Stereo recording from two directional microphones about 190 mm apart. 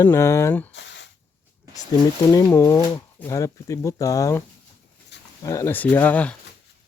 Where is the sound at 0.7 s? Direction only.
70° left (ahead or behind).